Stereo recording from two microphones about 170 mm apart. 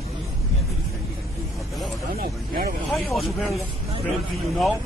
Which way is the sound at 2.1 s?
60° right (ahead or behind).